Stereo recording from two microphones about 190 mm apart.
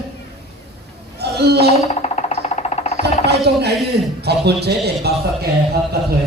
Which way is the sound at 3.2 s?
60° right (ahead or behind).